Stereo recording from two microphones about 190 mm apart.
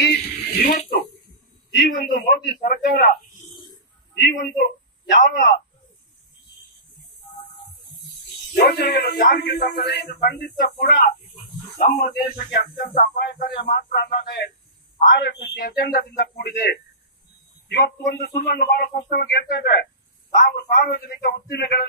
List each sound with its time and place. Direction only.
0.0 s a sound: 60° left (ahead or behind)
0.7 s speech: 45° left (ahead or behind)
1.7 s a man's voice: 65° left (ahead or behind)
3.0 s a sound: 45° left (ahead or behind)
5.2 s speech: 65° left (ahead or behind)
8.5 s speech: 60° left (ahead or behind)
9.0 s speech: 50° left (ahead or behind)
19.5 s speech: 60° left (ahead or behind)